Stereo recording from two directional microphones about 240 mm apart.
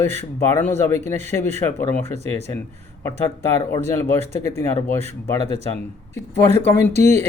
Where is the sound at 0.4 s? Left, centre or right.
Centre.